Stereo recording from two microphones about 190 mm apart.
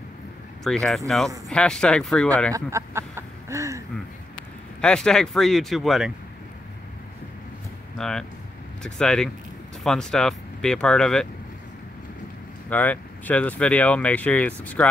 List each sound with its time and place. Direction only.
0.7 s speech: centre (ahead or behind)
2.5 s a sound: 15° right (ahead or behind)
4.8 s speech: 5° left (ahead or behind)
8.0 s speech: 5° left (ahead or behind)
12.6 s speech: 10° left (ahead or behind)